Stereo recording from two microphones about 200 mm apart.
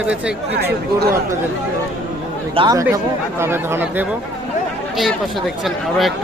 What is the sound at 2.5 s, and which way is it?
Speech, 25° right (ahead or behind).